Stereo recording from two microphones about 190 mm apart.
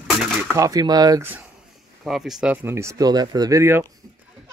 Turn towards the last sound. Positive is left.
turn(degrees=-15)  # may be behind; listen again after turning